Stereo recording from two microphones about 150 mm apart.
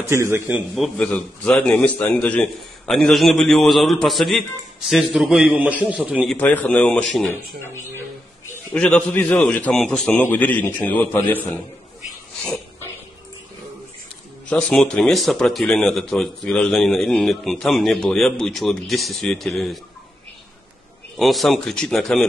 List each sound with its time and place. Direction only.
0.1 s a man's voice: 15° right (ahead or behind)
0.7 s a man's voice: 5° left (ahead or behind)
6.3 s a man's voice: 10° left (ahead or behind)
8.7 s a man's voice: 5° left (ahead or behind)
14.5 s a man's voice: 5° left (ahead or behind)
21.2 s a man's voice: centre (ahead or behind)